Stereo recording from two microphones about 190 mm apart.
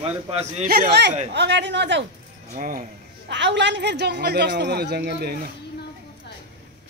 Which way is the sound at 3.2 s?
65° right (ahead or behind).